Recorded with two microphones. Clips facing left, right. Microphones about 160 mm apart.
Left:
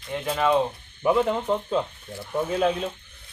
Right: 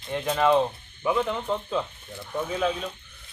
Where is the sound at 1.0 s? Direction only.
35° left (ahead or behind).